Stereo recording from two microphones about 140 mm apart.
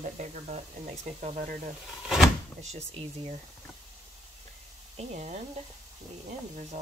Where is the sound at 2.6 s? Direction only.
50° right (ahead or behind).